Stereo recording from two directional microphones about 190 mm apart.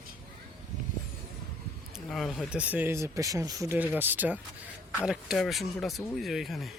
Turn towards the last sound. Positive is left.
turn(degrees=0)  # may be behind; listen again after turning